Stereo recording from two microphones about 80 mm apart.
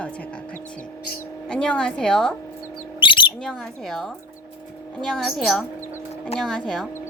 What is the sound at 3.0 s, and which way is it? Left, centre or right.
Squawk, left.